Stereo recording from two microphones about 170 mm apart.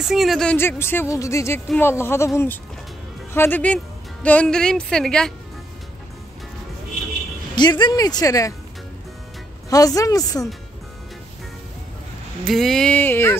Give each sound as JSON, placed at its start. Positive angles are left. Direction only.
{"t": 0.0, "sound": "speech", "side_deg": 0}
{"t": 7.5, "sound": "speech", "side_deg": 25}
{"t": 9.7, "sound": "speech", "side_deg": 20}
{"t": 12.4, "sound": "speech", "side_deg": 0}